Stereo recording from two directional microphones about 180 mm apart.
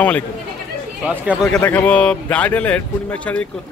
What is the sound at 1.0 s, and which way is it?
Speech, 5° right (ahead or behind).